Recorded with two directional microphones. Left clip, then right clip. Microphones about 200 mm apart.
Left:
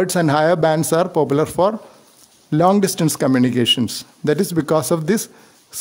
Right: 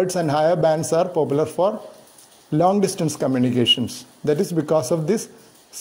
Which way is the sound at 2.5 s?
20° left (ahead or behind).